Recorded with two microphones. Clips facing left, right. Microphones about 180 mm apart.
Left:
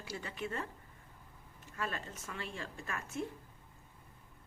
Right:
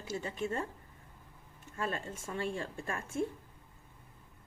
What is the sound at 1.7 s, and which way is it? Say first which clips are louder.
A woman's voice: right 4 dB; 30° right (ahead or behind).